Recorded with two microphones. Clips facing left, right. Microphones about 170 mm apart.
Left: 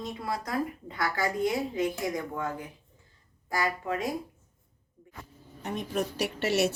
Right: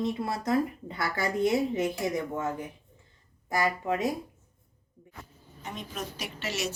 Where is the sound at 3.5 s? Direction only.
20° right (ahead or behind).